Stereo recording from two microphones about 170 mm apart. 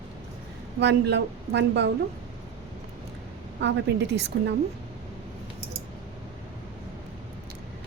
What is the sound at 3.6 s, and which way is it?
Speech, 90° right.